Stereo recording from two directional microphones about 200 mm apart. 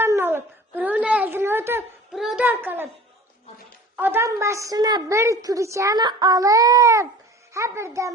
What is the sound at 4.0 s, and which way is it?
A woman's voice, 10° right (ahead or behind).